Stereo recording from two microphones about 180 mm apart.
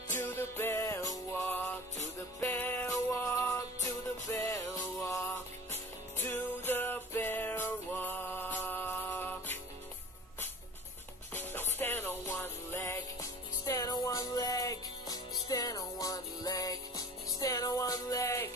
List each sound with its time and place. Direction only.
0.2 s music: 10° left (ahead or behind)
6.2 s music: 10° left (ahead or behind)
11.3 s music: 10° left (ahead or behind)